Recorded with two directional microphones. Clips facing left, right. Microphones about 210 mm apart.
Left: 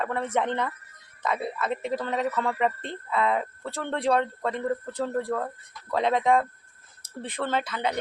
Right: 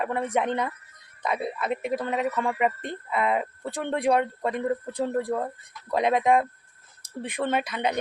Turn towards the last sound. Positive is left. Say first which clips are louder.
# right 2 dB
turn(degrees=-15)  # may be behind; listen again after turning